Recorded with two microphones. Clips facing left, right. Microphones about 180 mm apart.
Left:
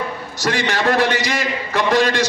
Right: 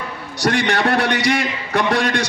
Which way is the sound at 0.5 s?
55° right (ahead or behind).